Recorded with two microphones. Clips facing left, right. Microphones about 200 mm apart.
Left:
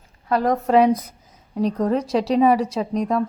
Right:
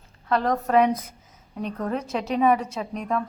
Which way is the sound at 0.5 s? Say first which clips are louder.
Left 5 dB; 30° left (ahead or behind).